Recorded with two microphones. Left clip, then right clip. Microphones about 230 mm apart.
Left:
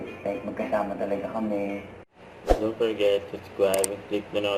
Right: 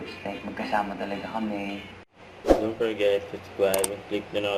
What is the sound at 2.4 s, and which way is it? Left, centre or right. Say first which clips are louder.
Speech: right 1 dB; centre.